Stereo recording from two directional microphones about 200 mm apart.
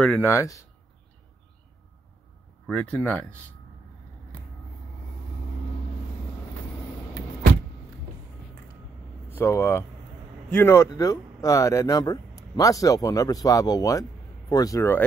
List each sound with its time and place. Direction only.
0.0 s speech: 10° left (ahead or behind)
2.6 s speech: 5° left (ahead or behind)
9.3 s speech: 10° left (ahead or behind)